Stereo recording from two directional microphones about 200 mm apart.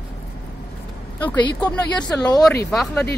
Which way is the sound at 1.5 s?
20° left (ahead or behind).